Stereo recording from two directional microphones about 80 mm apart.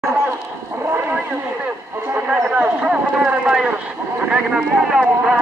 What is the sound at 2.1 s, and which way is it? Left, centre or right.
A man's voice, centre.